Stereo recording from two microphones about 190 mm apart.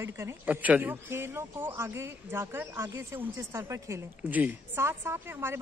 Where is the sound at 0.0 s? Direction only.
15° right (ahead or behind).